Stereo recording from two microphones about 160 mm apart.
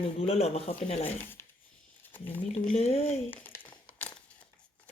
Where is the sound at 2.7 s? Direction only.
45° left (ahead or behind).